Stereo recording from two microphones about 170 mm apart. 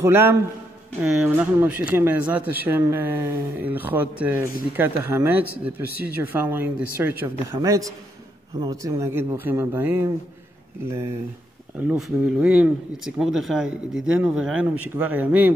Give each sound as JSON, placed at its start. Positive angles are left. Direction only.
{"t": 0.0, "sound": "speech", "side_deg": -15}
{"t": 8.5, "sound": "speech", "side_deg": -20}